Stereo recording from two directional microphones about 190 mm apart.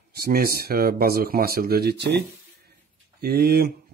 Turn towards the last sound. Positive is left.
turn(degrees=-55)  # may be behind; listen again after turning